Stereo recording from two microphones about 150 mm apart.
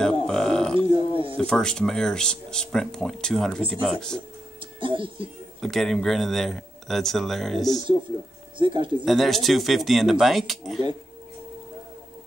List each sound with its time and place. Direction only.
0.0 s a sound: 5° left (ahead or behind)
0.7 s a sound: 35° right (ahead or behind)
1.4 s speech: 5° left (ahead or behind)
4.7 s speech: 35° right (ahead or behind)
5.6 s speech: centre (ahead or behind)
8.5 s speech: 30° right (ahead or behind)
9.0 s speech: centre (ahead or behind)